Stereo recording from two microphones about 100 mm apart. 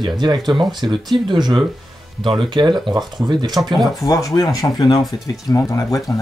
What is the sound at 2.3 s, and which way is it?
Speech, 55° right (ahead or behind).